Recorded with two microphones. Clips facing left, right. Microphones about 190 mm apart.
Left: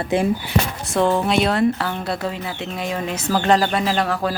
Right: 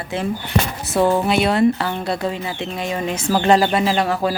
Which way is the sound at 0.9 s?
5° right (ahead or behind).